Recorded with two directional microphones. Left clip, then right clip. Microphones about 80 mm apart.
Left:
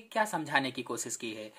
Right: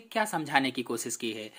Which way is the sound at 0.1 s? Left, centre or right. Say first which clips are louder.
Right 2 dB; right.